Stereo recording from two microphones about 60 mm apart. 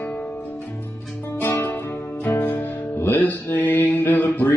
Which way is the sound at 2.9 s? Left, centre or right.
Left.